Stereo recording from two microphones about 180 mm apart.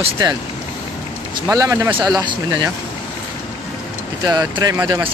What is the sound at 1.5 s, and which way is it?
Speech, 15° right (ahead or behind).